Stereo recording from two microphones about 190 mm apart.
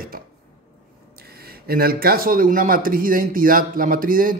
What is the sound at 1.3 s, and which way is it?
Speech, 55° right (ahead or behind).